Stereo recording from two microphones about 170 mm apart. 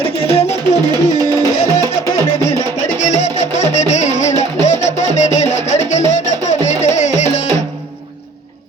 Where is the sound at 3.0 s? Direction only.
45° left (ahead or behind).